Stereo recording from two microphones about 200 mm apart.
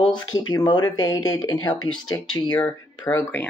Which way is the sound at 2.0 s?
80° left.